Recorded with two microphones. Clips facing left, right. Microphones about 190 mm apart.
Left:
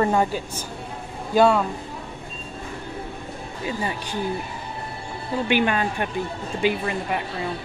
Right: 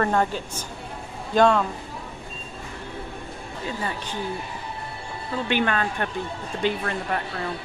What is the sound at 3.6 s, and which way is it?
Speech, 15° left (ahead or behind).